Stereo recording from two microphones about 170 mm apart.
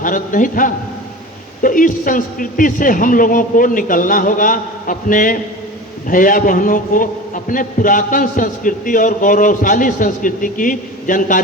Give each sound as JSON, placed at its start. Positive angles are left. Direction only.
{"t": 0.0, "sound": "a man's voice", "side_deg": 50}